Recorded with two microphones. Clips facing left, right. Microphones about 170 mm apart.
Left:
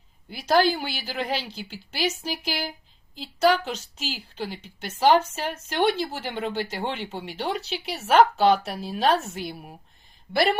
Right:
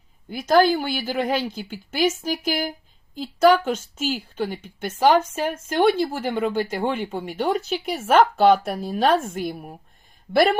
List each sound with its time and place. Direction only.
0.3 s speech: 50° right (ahead or behind)